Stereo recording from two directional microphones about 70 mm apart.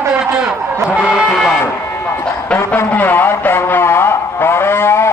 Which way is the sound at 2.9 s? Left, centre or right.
Left.